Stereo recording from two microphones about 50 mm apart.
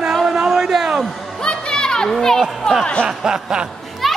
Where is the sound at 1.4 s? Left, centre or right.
Centre.